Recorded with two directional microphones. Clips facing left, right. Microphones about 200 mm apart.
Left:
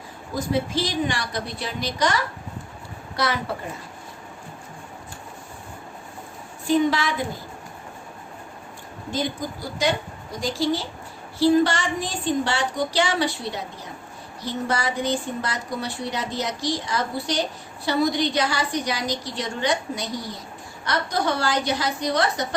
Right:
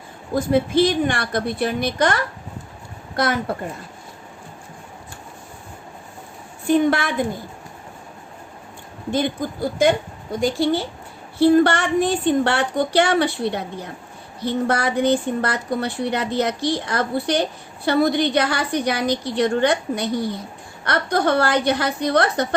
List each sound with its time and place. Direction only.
0.3 s a woman's voice: 55° right (ahead or behind)
6.7 s a woman's voice: 55° right (ahead or behind)
9.1 s a woman's voice: 55° right (ahead or behind)